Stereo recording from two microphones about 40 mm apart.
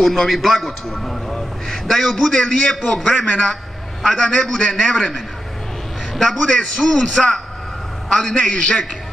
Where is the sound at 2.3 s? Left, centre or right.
Centre.